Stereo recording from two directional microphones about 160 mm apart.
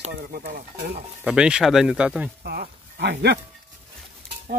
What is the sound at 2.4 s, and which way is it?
Speech, 80° right.